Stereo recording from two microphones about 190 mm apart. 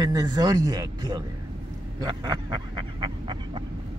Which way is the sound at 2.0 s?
25° right (ahead or behind).